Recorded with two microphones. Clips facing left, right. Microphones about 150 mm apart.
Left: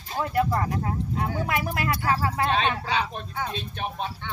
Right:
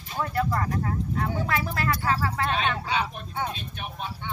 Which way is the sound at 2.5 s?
30° left (ahead or behind).